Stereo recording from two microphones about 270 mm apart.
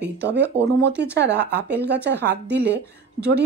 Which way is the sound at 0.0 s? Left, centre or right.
Right.